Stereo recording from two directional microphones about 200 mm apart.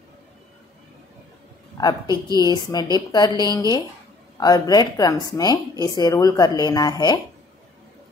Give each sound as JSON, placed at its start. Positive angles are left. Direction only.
{"t": 1.8, "sound": "speech", "side_deg": 20}